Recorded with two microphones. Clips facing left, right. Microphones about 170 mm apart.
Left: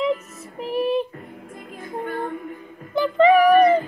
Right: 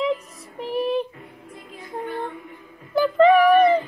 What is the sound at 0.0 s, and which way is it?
Female singing, centre (ahead or behind).